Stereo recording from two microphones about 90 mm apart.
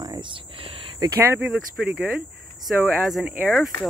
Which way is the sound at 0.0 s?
55° right (ahead or behind).